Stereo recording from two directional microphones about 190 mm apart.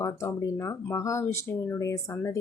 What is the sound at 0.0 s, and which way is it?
Speech, 15° left (ahead or behind).